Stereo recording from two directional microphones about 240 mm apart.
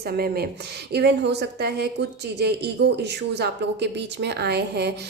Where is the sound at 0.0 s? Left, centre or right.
Right.